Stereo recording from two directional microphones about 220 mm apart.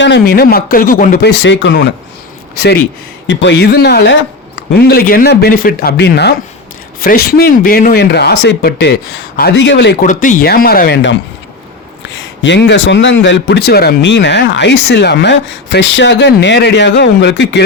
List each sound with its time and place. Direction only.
0.0 s a man's voice: 50° left (ahead or behind)
3.2 s a man's voice: 50° left (ahead or behind)
10.1 s a man's voice: 35° left (ahead or behind); by 17.6 s 55° left (ahead or behind)